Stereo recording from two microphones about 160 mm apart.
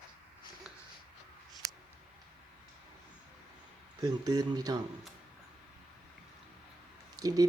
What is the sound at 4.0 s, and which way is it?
Speech, 25° right (ahead or behind).